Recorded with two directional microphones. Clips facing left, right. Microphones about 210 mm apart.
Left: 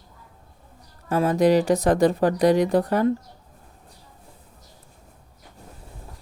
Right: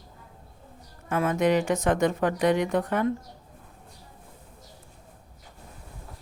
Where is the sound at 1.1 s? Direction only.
35° left (ahead or behind).